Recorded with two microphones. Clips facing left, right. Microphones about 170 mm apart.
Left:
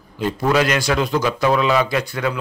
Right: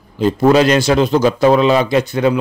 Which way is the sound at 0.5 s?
25° right (ahead or behind).